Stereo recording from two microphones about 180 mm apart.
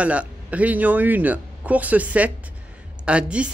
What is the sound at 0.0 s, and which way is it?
A woman's voice, 5° right (ahead or behind).